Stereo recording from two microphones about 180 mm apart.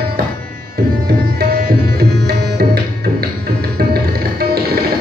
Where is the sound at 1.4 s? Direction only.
60° right (ahead or behind).